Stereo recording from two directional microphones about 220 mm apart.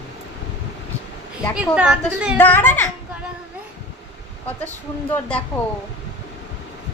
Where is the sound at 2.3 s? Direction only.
10° left (ahead or behind).